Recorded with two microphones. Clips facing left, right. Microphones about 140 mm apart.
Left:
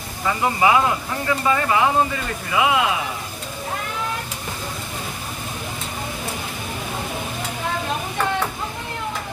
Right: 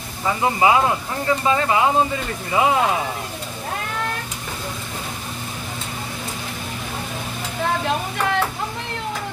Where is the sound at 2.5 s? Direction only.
35° right (ahead or behind).